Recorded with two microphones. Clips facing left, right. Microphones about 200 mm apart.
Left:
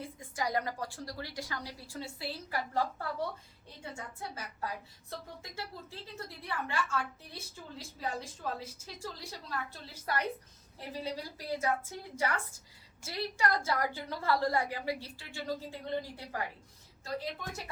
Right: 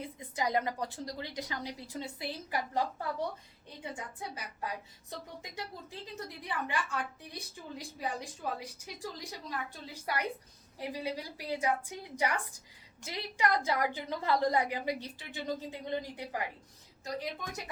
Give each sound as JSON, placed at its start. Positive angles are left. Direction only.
{"t": 0.0, "sound": "a woman's voice", "side_deg": -20}
{"t": 6.1, "sound": "a woman's voice", "side_deg": -15}